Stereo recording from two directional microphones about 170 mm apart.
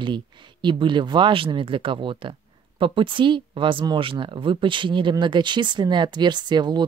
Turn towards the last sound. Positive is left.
turn(degrees=-25)  # may be behind; listen again after turning